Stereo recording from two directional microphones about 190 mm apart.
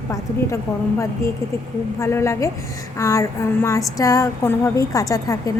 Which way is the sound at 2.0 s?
15° left (ahead or behind).